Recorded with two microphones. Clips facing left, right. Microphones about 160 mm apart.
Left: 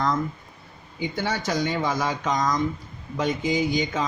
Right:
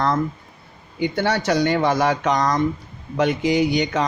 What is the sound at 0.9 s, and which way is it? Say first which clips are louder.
Speech: right 6 dB; 65° right (ahead or behind).